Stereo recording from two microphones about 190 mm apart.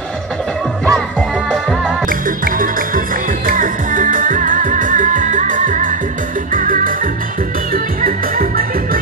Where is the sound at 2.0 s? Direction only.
45° right (ahead or behind).